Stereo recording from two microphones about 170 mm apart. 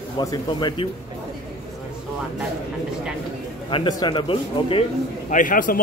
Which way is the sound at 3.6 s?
30° left (ahead or behind).